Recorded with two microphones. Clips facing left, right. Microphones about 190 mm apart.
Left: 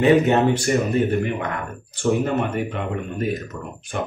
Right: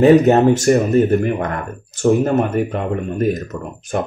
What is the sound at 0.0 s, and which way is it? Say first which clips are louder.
Speech: right 6 dB; 40° right (ahead or behind).